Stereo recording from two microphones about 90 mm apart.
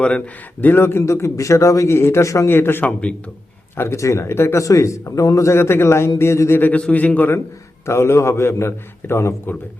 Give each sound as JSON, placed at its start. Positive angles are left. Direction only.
{"t": 0.6, "sound": "a man's voice", "side_deg": 25}
{"t": 6.6, "sound": "a man's voice", "side_deg": 20}
{"t": 7.9, "sound": "a man's voice", "side_deg": 30}